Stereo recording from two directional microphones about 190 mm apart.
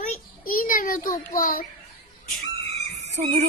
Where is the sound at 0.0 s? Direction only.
45° left (ahead or behind).